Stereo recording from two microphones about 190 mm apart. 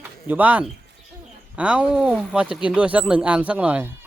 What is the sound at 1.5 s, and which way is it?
Speech, 5° right (ahead or behind).